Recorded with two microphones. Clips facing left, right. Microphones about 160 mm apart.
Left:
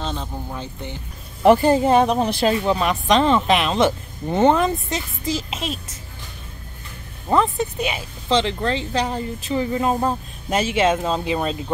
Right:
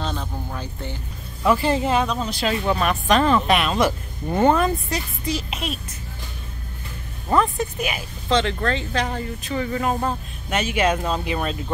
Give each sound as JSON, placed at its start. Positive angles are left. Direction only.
{"t": 0.0, "sound": "vehicle", "side_deg": 20}
{"t": 1.4, "sound": "speech", "side_deg": 65}
{"t": 1.7, "sound": "speech", "side_deg": 45}
{"t": 2.6, "sound": "speech", "side_deg": 20}
{"t": 7.2, "sound": "speech", "side_deg": 25}